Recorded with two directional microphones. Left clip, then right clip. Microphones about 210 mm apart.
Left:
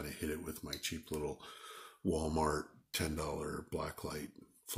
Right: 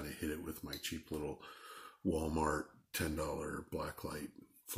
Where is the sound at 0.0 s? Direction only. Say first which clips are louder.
Left 1 dB; 30° left (ahead or behind).